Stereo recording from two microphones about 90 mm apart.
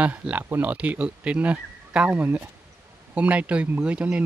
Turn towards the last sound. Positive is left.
turn(degrees=-15)  # may be behind; listen again after turning